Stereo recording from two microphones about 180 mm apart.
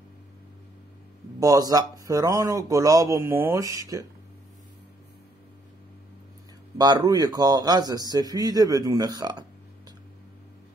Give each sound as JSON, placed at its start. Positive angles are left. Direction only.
{"t": 1.4, "sound": "speech", "side_deg": -20}
{"t": 6.8, "sound": "speech", "side_deg": -20}